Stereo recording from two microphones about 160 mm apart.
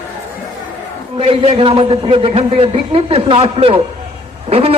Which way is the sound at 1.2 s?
35° right (ahead or behind).